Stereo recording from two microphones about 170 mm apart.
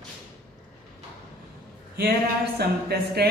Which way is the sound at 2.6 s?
70° right (ahead or behind).